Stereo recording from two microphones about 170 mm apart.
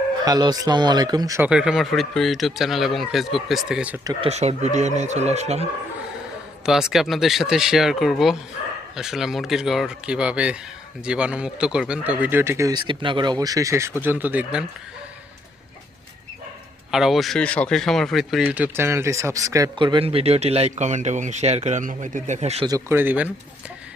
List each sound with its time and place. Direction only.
0.3 s speech: 20° right (ahead or behind)
1.4 s speech: 5° right (ahead or behind)
4.0 s speech: 25° right (ahead or behind)
4.3 s speech: 40° right (ahead or behind)
6.7 s speech: 5° right (ahead or behind)
16.9 s speech: centre (ahead or behind); by 22.6 s 40° right (ahead or behind)
22.6 s speech: 20° right (ahead or behind)